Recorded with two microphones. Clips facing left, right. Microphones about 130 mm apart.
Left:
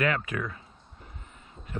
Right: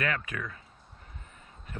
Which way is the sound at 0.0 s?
25° left (ahead or behind).